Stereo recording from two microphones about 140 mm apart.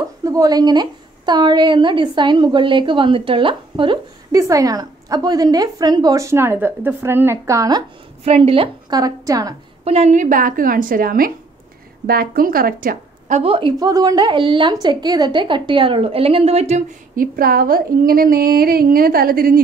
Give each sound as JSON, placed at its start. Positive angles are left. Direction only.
{"t": 0.2, "sound": "a woman's voice", "side_deg": -25}
{"t": 4.4, "sound": "a woman's voice", "side_deg": -25}
{"t": 8.2, "sound": "a woman's voice", "side_deg": -45}
{"t": 8.9, "sound": "a woman's voice", "side_deg": -25}
{"t": 9.8, "sound": "a woman's voice", "side_deg": -50}
{"t": 13.4, "sound": "a woman's voice", "side_deg": -40}
{"t": 17.1, "sound": "speech", "side_deg": -90}